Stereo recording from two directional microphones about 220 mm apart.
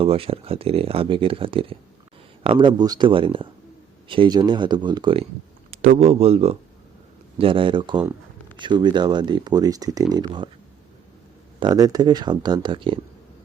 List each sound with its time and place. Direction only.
0.0 s speech: 25° right (ahead or behind)
5.7 s a sound: 40° right (ahead or behind)
6.1 s speech: 25° right (ahead or behind)
11.6 s speech: 15° right (ahead or behind)